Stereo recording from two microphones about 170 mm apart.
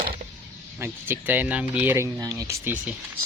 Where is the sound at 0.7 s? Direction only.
15° right (ahead or behind).